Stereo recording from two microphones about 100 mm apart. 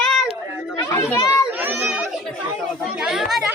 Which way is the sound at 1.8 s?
5° right (ahead or behind).